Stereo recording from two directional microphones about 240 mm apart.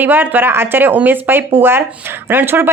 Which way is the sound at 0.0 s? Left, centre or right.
Centre.